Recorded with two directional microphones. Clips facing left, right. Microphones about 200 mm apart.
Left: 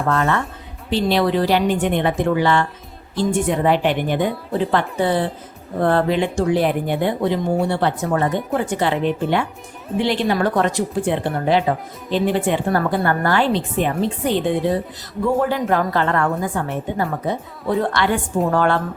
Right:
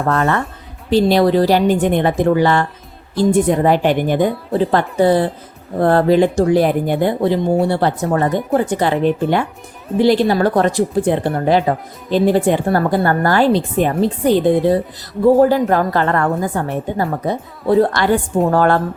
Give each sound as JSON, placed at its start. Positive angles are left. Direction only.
{"t": 0.0, "sound": "speech", "side_deg": -45}
{"t": 10.0, "sound": "speech", "side_deg": -40}